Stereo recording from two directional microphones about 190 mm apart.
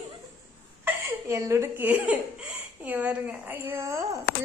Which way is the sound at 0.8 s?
15° right (ahead or behind).